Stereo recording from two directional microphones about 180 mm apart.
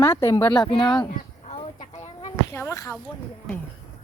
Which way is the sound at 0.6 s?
25° left (ahead or behind).